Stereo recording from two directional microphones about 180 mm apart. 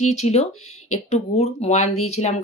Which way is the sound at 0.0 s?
40° left (ahead or behind).